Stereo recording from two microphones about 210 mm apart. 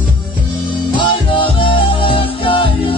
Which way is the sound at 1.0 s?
25° left (ahead or behind).